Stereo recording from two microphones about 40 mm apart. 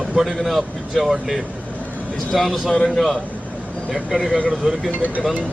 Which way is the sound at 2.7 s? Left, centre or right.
Centre.